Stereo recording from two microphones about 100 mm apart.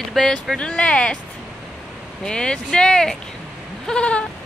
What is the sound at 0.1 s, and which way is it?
Speech, 5° left (ahead or behind).